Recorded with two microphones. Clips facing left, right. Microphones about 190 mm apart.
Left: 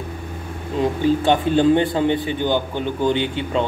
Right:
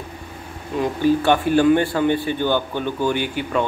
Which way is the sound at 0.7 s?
20° left (ahead or behind).